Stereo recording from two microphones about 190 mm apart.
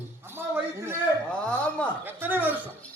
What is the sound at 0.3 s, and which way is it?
Speech, 10° right (ahead or behind).